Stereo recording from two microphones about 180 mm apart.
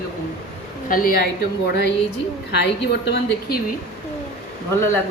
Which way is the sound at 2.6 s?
70° left (ahead or behind).